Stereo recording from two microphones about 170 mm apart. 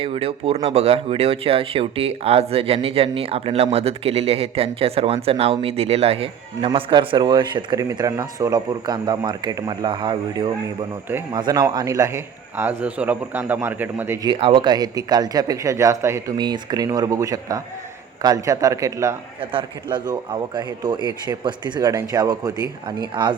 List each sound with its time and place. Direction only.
0.0 s a man's voice: 35° right (ahead or behind); by 14.3 s 15° right (ahead or behind)
14.3 s speech: 30° right (ahead or behind)
19.4 s speech: 30° right (ahead or behind)